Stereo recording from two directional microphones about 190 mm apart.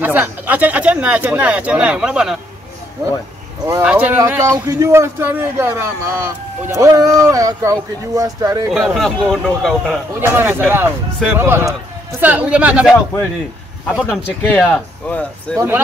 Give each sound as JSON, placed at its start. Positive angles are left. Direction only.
{"t": 0.0, "sound": "a man's voice", "side_deg": -10}
{"t": 3.8, "sound": "a man's voice", "side_deg": -10}
{"t": 8.7, "sound": "speech", "side_deg": 0}
{"t": 10.2, "sound": "a man's voice", "side_deg": -10}
{"t": 14.0, "sound": "speech", "side_deg": 10}